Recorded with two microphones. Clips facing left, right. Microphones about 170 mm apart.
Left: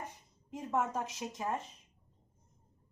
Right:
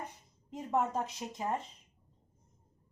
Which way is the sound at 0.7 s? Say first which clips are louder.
Right 2 dB; 15° right (ahead or behind).